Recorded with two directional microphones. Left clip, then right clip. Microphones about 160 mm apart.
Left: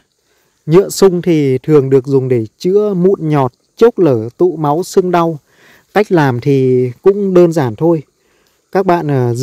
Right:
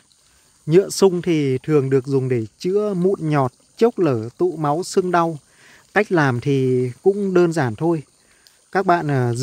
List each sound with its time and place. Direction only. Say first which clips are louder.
0.7 s speech: left 6 dB; 35° left (ahead or behind)
3.0 s speech: left 8 dB; 15° left (ahead or behind)
3.3 s speech: left 6 dB; 30° left (ahead or behind)